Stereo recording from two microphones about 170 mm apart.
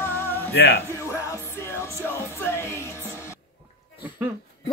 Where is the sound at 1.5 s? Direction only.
15° left (ahead or behind).